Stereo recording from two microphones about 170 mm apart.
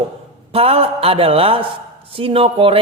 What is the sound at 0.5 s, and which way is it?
Speech, 35° right (ahead or behind).